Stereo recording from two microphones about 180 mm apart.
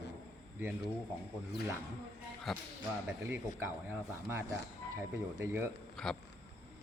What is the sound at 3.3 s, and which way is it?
Speech, 15° right (ahead or behind).